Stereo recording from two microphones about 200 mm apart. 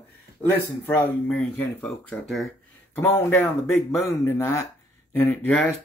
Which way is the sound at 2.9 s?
10° left (ahead or behind).